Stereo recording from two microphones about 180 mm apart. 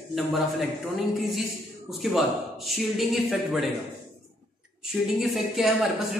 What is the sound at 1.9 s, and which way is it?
A man's voice, centre (ahead or behind).